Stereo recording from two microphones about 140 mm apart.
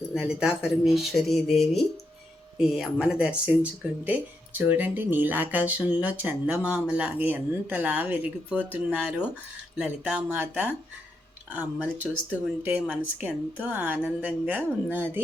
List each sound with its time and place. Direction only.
0.1 s speech: 5° right (ahead or behind)